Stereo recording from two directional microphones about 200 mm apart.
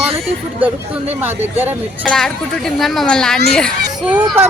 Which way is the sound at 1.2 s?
10° right (ahead or behind).